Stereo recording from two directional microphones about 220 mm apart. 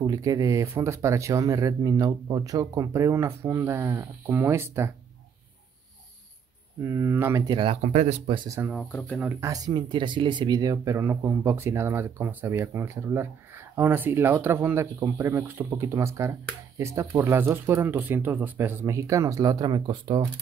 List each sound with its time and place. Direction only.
0.0 s speech: 15° right (ahead or behind)
6.8 s speech: 10° right (ahead or behind); by 8.4 s 30° right (ahead or behind)
8.5 s speech: 5° right (ahead or behind)
8.9 s speech: 5° left (ahead or behind)
9.2 s speech: 10° right (ahead or behind)